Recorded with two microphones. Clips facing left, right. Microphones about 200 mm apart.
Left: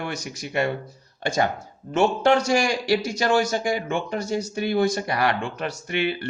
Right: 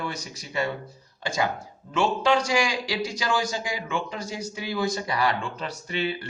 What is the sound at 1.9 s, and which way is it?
A man's voice, 60° left (ahead or behind).